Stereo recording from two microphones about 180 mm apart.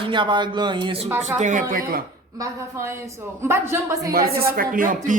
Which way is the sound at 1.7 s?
55° right (ahead or behind).